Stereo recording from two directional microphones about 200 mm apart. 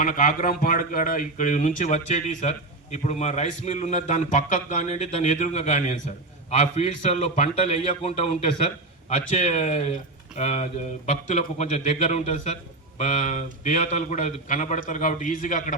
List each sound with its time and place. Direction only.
0.0 s speech: 40° left (ahead or behind)